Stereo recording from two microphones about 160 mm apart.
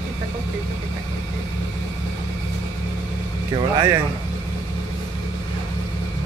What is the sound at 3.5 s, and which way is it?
Speech, 25° right (ahead or behind).